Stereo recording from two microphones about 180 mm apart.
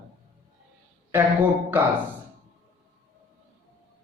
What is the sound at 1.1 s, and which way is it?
Speech, 10° right (ahead or behind).